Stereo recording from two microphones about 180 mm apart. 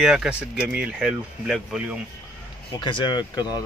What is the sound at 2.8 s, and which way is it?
Speech, 25° left (ahead or behind).